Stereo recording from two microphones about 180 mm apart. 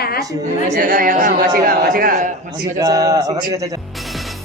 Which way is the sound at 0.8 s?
50° right (ahead or behind).